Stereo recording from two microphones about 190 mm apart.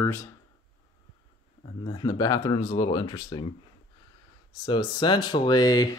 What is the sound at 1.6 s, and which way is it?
Speech, 25° left (ahead or behind).